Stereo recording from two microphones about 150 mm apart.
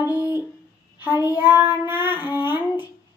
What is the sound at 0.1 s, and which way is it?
Music, 15° right (ahead or behind).